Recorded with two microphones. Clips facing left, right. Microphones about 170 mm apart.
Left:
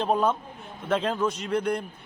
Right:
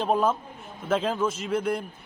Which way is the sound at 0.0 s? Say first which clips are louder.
Even; centre (ahead or behind).